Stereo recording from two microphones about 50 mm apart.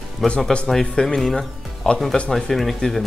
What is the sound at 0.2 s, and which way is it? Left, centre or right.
Speech, centre.